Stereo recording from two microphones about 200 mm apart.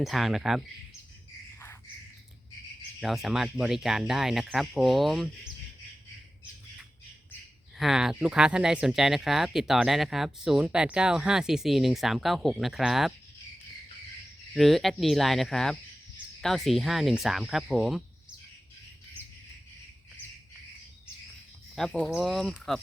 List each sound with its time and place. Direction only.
0.0 s speech: centre (ahead or behind)
3.0 s speech: centre (ahead or behind)
7.8 s speech: centre (ahead or behind)
14.5 s speech: centre (ahead or behind)
21.8 s speech: centre (ahead or behind)